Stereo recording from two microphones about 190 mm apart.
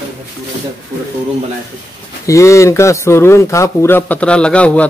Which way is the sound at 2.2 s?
15° left (ahead or behind).